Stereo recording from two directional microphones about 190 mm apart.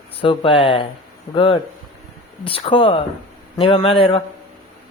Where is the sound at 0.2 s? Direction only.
30° left (ahead or behind).